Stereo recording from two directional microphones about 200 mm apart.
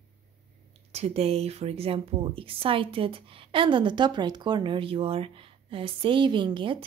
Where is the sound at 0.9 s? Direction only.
30° right (ahead or behind).